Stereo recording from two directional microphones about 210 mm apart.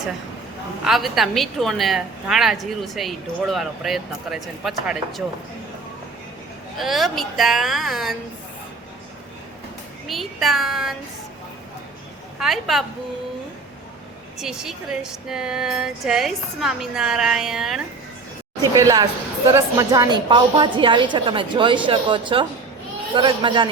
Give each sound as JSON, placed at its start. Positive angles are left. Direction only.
{"t": 0.9, "sound": "a woman's voice", "side_deg": 0}
{"t": 6.7, "sound": "a woman's voice", "side_deg": 0}
{"t": 10.1, "sound": "a woman's voice", "side_deg": 0}
{"t": 12.4, "sound": "a woman's voice", "side_deg": 0}
{"t": 14.3, "sound": "a woman's voice", "side_deg": 0}
{"t": 18.6, "sound": "a woman's voice", "side_deg": -15}